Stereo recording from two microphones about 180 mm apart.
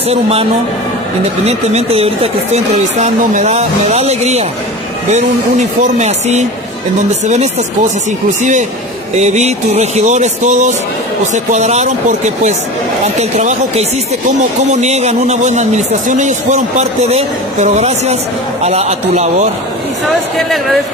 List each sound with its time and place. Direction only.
0.1 s a man's voice: 35° right (ahead or behind)
8.4 s a man's voice: 45° right (ahead or behind)
13.0 s a man's voice: 40° right (ahead or behind)
20.4 s speech: centre (ahead or behind)